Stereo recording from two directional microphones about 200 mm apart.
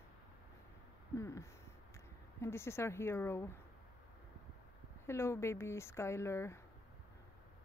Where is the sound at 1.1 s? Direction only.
15° left (ahead or behind).